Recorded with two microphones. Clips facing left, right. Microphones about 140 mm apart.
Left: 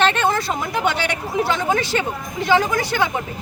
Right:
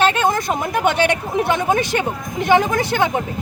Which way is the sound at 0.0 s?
10° right (ahead or behind).